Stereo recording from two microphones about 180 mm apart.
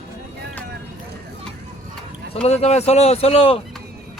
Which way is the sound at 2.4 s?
35° left (ahead or behind).